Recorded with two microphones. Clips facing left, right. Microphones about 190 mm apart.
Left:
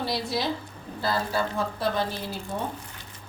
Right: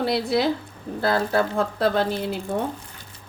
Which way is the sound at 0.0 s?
60° right (ahead or behind).